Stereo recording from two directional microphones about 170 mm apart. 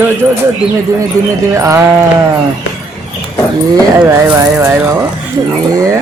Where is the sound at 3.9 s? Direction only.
15° right (ahead or behind).